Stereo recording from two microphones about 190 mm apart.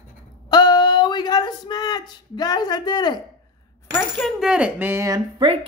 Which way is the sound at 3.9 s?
Centre (ahead or behind).